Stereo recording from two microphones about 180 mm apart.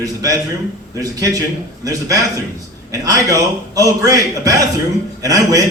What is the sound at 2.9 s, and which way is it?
A man's voice, 20° right (ahead or behind).